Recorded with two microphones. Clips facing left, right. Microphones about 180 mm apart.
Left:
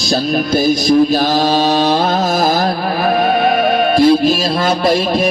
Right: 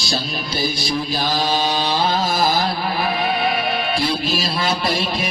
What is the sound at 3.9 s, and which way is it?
Music, 50° left (ahead or behind).